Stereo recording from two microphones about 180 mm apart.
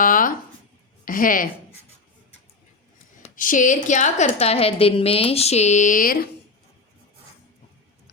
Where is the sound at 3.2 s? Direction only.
50° left (ahead or behind).